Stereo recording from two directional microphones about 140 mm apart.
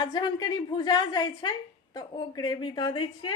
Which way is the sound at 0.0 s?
30° left (ahead or behind).